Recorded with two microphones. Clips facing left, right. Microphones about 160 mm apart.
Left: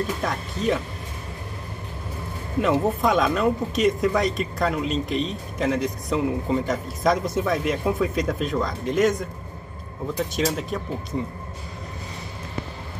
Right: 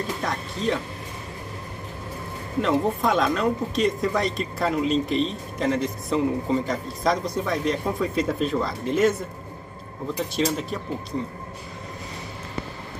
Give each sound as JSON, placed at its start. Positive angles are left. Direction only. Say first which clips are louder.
{"t": 0.2, "sound": "speech", "louder": "left 1 dB", "side_deg": 0}
{"t": 2.6, "sound": "speech", "louder": "left 1 dB", "side_deg": 0}
{"t": 10.3, "sound": "speech", "louder": "right 2 dB", "side_deg": 0}